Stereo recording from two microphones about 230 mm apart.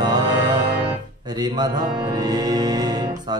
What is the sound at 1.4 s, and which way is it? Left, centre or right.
Music, centre.